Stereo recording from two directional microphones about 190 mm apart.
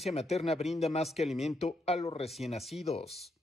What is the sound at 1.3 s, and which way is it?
Speech, centre (ahead or behind).